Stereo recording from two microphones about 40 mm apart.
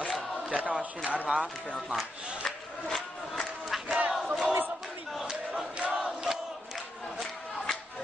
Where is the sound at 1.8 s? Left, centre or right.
Centre.